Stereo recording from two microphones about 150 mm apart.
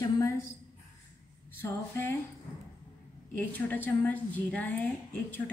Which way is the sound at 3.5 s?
10° left (ahead or behind).